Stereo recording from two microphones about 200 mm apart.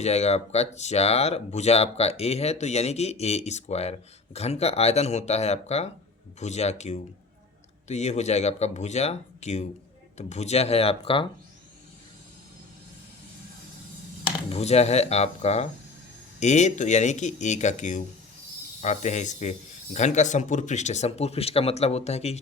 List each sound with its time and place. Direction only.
0.0 s speech: 30° left (ahead or behind)
14.5 s speech: 30° left (ahead or behind)